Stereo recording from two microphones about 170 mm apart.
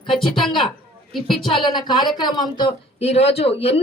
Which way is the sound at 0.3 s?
Centre (ahead or behind).